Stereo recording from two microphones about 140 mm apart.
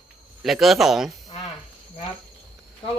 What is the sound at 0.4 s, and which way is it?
Speech, centre (ahead or behind).